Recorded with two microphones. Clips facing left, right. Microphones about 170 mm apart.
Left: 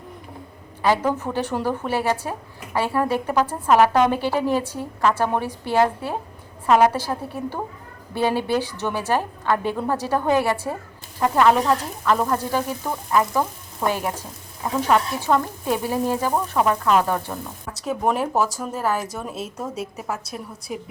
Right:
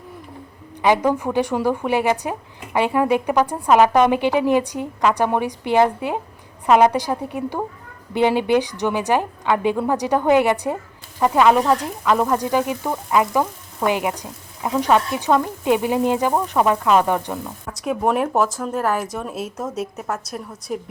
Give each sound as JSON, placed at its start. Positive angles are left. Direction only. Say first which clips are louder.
{"t": 0.8, "sound": "speech", "louder": "right 3 dB", "side_deg": -15}
{"t": 17.8, "sound": "a woman's voice", "louder": "right 3 dB", "side_deg": 0}